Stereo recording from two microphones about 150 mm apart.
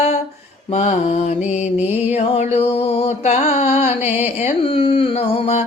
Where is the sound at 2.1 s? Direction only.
45° left (ahead or behind).